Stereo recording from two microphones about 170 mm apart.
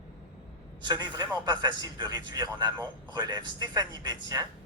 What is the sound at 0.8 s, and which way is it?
A man's voice, 25° right (ahead or behind).